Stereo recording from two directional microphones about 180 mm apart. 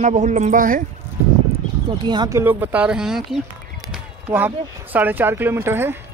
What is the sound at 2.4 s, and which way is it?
Speech, 10° right (ahead or behind).